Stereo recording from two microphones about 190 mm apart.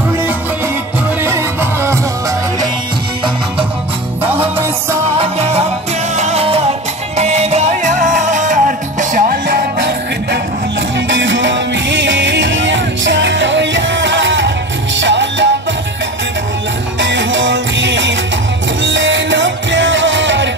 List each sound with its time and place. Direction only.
1.2 s music: 15° right (ahead or behind)
4.2 s music: 10° right (ahead or behind)
5.2 s music: 30° right (ahead or behind); by 10.4 s 55° right (ahead or behind)
11.1 s music: 75° right (ahead or behind)
17.0 s music: 75° right (ahead or behind)